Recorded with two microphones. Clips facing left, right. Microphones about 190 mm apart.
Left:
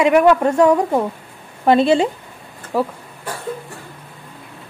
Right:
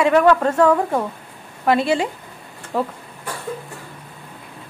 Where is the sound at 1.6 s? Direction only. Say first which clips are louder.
Left 4 dB; 25° left (ahead or behind).